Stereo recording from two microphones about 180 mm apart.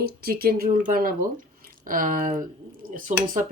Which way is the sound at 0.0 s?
55° right (ahead or behind).